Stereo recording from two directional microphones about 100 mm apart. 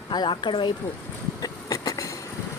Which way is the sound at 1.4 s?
40° left (ahead or behind).